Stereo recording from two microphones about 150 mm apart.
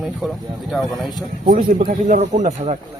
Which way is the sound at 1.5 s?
65° right (ahead or behind).